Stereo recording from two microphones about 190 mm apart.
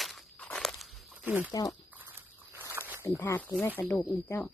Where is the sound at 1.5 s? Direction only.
20° left (ahead or behind).